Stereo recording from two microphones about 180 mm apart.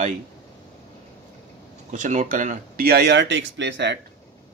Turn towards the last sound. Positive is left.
turn(degrees=-85)